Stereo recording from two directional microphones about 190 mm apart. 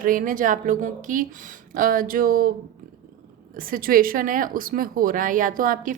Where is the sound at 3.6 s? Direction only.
50° right (ahead or behind).